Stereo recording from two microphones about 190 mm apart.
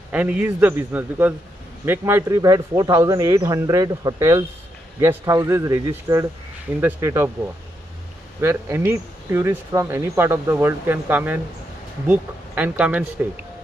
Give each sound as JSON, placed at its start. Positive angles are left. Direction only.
{"t": 0.1, "sound": "speech", "side_deg": -5}
{"t": 8.4, "sound": "speech", "side_deg": -10}